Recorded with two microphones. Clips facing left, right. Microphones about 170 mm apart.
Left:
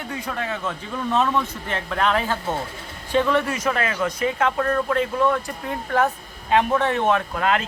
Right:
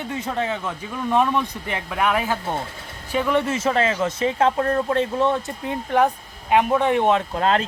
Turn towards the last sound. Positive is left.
turn(degrees=-30)  # may be behind; listen again after turning